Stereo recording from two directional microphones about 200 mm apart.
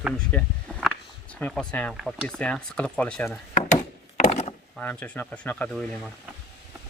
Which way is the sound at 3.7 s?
35° left (ahead or behind).